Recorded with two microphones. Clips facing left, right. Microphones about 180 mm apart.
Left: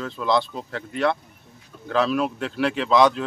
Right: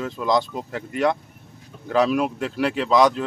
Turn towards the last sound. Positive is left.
turn(degrees=-10)  # may be behind; listen again after turning